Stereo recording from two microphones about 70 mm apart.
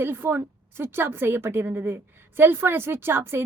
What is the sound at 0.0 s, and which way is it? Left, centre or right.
A woman's voice, right.